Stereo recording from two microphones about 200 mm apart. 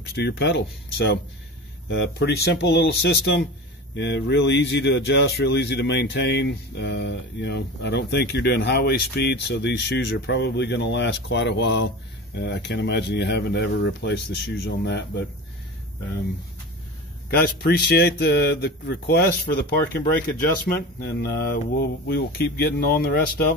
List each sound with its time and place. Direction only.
0.1 s speech: 55° left (ahead or behind)
17.3 s speech: 50° left (ahead or behind)
21.0 s speech: 55° left (ahead or behind)